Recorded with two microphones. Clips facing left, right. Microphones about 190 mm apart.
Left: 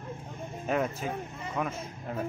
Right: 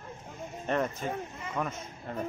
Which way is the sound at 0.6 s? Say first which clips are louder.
Left 1 dB; 5° left (ahead or behind).